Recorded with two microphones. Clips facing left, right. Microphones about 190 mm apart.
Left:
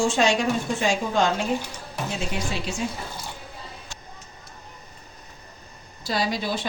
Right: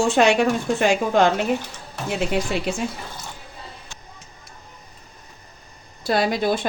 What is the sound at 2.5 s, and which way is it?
Speech, 55° right (ahead or behind).